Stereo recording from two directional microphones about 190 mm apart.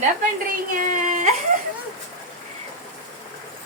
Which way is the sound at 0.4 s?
45° right (ahead or behind).